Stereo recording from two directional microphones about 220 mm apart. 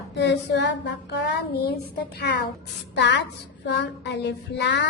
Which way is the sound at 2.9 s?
55° left (ahead or behind).